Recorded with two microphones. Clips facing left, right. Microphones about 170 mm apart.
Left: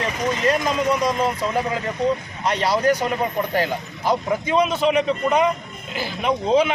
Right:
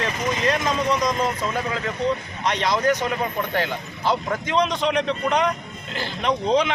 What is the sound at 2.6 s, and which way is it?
Speech, 35° left (ahead or behind).